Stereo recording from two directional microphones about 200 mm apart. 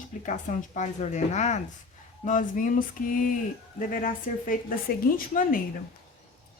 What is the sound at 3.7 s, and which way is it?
A woman's voice, 45° left (ahead or behind).